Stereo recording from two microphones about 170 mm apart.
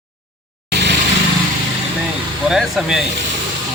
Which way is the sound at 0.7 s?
85° right.